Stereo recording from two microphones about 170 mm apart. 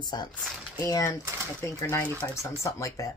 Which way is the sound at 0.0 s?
25° left (ahead or behind).